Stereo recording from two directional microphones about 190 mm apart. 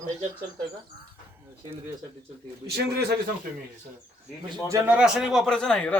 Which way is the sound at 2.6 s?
55° right (ahead or behind).